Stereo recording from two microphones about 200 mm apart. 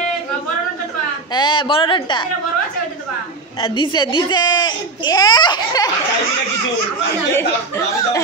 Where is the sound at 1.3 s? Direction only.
20° left (ahead or behind).